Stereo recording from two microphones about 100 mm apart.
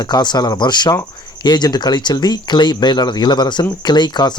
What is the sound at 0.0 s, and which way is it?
Speech, 45° left (ahead or behind).